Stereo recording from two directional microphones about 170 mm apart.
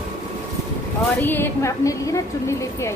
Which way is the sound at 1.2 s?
10° left (ahead or behind).